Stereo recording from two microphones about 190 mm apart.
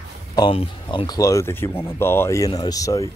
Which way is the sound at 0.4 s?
25° left (ahead or behind).